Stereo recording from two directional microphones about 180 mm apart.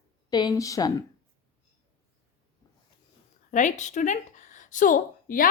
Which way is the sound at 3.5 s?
40° left (ahead or behind).